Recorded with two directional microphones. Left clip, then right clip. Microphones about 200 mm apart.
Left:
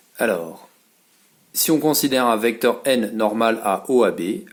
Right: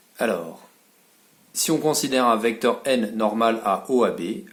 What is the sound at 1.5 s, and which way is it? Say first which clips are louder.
Speech: left 3 dB; 35° left (ahead or behind).